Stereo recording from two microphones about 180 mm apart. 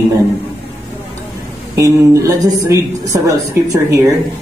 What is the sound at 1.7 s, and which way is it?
A woman's voice, 15° right (ahead or behind).